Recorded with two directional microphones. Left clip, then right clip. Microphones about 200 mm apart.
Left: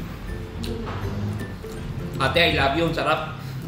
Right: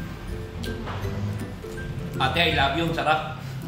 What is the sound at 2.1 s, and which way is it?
Speech, 5° right (ahead or behind).